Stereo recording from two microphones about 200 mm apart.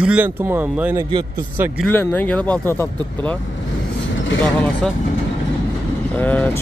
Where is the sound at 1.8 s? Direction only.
5° left (ahead or behind).